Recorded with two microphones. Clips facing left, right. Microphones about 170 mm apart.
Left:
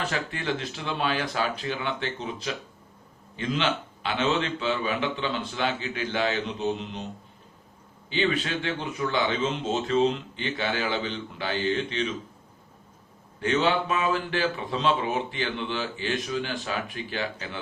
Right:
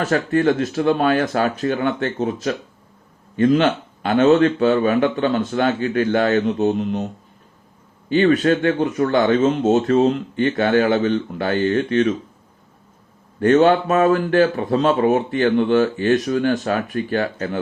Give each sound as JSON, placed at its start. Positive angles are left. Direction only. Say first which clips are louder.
{"t": 0.0, "sound": "speech", "louder": "right 13 dB", "side_deg": -45}
{"t": 8.1, "sound": "speech", "louder": "right 12 dB", "side_deg": -50}
{"t": 13.4, "sound": "speech", "louder": "right 11 dB", "side_deg": -50}